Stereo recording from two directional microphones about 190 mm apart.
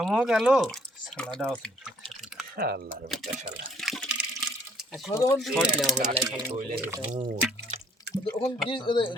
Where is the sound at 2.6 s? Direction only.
50° right (ahead or behind).